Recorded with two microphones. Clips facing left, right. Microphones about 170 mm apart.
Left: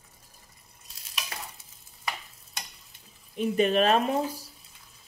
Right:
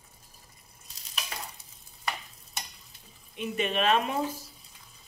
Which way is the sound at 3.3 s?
40° left (ahead or behind).